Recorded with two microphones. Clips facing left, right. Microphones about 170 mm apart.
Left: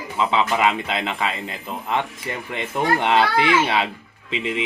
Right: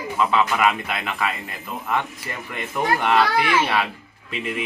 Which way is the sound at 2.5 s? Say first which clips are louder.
Left 1 dB; 25° left (ahead or behind).